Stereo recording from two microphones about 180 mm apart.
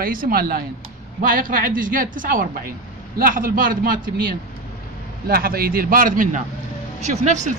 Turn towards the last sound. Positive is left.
turn(degrees=-40)  # may be behind; listen again after turning